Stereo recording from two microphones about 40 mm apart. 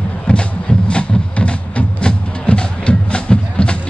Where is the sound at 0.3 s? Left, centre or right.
Left.